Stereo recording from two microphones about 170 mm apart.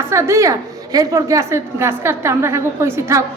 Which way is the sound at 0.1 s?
15° right (ahead or behind).